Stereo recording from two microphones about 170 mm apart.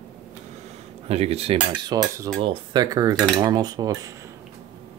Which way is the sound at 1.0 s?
35° right (ahead or behind).